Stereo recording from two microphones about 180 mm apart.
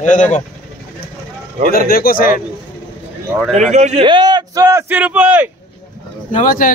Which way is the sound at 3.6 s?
40° right (ahead or behind).